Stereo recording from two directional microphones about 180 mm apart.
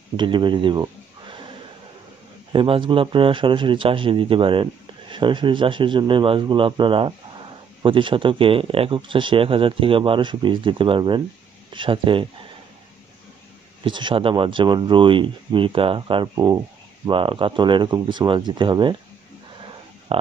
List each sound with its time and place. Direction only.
0.2 s speech: 25° right (ahead or behind)
2.5 s speech: 30° right (ahead or behind)
13.8 s speech: 25° right (ahead or behind)
20.1 s speech: 30° right (ahead or behind)